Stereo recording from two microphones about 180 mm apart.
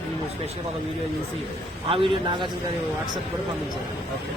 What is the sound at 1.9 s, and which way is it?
Speech, 30° right (ahead or behind).